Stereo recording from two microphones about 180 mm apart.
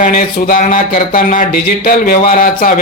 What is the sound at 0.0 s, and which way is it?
Speech, 50° left (ahead or behind).